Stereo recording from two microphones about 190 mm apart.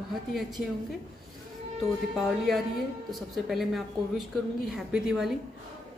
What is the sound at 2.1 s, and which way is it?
A woman's voice, centre (ahead or behind).